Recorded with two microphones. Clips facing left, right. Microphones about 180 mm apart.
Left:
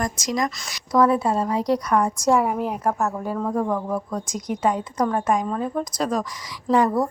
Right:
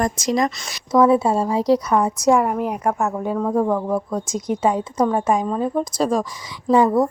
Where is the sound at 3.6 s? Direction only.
25° right (ahead or behind).